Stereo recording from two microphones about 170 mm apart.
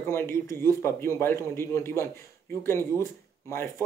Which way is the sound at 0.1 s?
15° left (ahead or behind).